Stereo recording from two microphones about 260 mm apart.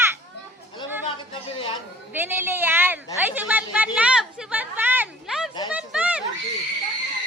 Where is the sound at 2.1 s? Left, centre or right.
Centre.